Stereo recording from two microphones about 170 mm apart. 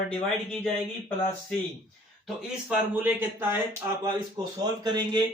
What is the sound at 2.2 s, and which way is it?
Speech, 5° right (ahead or behind).